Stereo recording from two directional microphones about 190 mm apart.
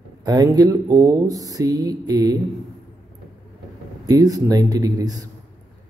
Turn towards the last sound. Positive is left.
turn(degrees=-20)  # may be behind; listen again after turning